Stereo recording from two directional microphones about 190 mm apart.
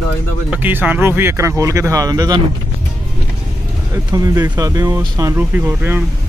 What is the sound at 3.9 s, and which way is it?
Speech, 20° right (ahead or behind).